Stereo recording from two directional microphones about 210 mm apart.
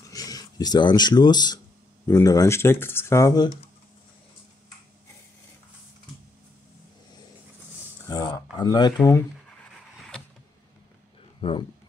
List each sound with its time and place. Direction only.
0.1 s speech: 15° left (ahead or behind)
8.1 s a sound: 15° left (ahead or behind)
9.9 s power windows: 5° left (ahead or behind)
11.4 s speech: 25° left (ahead or behind)